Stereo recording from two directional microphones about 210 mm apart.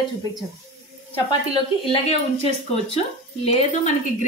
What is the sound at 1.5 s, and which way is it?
Speech, 25° left (ahead or behind).